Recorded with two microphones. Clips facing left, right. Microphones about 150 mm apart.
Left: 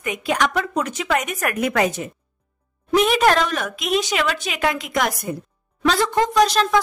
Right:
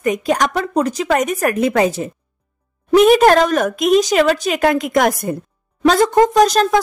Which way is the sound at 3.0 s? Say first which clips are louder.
Right 7 dB; 45° right (ahead or behind).